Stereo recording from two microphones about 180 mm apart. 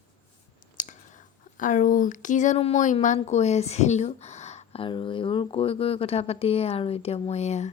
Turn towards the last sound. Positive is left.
turn(degrees=40)  # may be behind; listen again after turning